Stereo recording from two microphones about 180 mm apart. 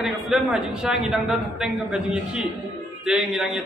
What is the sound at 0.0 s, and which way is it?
A man's voice, 5° right (ahead or behind).